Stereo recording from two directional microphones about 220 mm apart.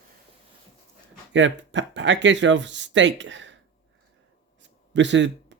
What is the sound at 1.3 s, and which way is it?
Speech, 55° right (ahead or behind).